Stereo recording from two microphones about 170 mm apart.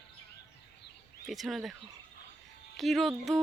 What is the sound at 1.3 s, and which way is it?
Speech, centre (ahead or behind).